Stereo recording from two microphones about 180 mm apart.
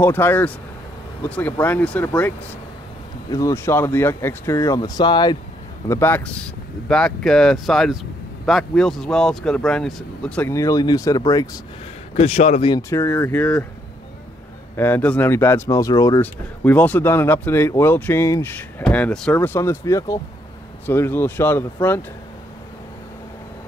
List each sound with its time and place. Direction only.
0.0 s speech: 10° left (ahead or behind)
5.9 s speech: 10° left (ahead or behind)
12.2 s speech: 35° left (ahead or behind)
12.7 s speech: 15° left (ahead or behind)
14.8 s speech: 10° left (ahead or behind)